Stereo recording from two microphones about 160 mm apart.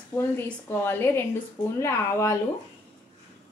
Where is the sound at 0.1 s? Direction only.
15° left (ahead or behind).